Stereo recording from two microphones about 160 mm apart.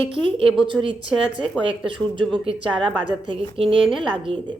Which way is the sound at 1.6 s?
35° right (ahead or behind).